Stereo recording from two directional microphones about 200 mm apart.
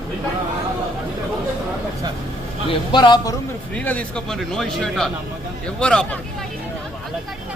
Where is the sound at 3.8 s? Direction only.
5° left (ahead or behind).